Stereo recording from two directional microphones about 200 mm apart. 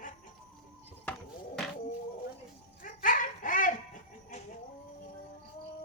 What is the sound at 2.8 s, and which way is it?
Dog, 40° left (ahead or behind).